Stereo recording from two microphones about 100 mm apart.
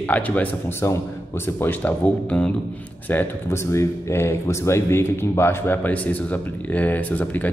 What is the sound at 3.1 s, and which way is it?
A man's voice, 20° left (ahead or behind).